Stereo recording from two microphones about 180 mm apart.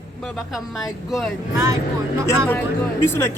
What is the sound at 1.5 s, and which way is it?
Speech, 20° right (ahead or behind).